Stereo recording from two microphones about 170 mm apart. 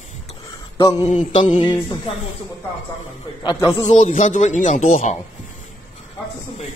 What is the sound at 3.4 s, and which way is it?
Speech, 25° left (ahead or behind).